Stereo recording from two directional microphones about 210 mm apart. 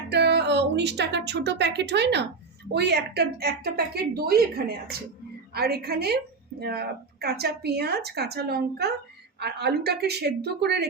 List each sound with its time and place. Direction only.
0.1 s a woman's voice: 55° right (ahead or behind)